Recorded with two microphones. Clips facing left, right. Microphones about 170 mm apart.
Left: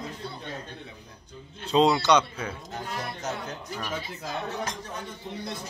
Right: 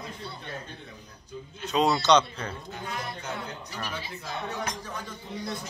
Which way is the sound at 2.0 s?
10° left (ahead or behind).